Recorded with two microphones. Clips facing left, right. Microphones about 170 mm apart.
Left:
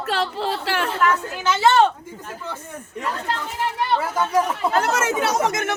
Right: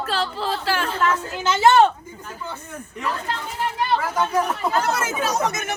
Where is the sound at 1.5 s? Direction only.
10° right (ahead or behind).